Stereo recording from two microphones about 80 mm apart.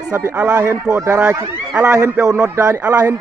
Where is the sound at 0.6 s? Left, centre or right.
Right.